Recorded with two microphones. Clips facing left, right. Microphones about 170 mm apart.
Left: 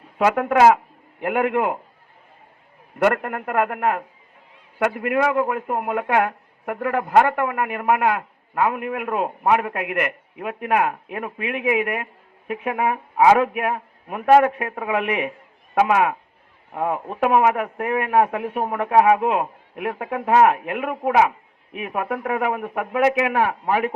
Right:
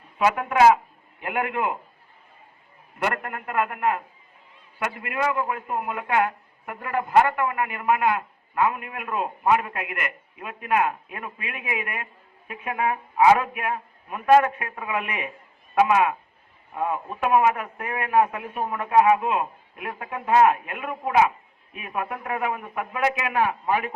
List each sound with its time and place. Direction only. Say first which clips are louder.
0.3 s speech: left 2 dB; 70° left (ahead or behind)
1.2 s a man's voice: left 6 dB; 55° left (ahead or behind)
3.0 s a man's voice: left 8 dB; 60° left (ahead or behind)
15.7 s a man's voice: left 1 dB; 60° left (ahead or behind)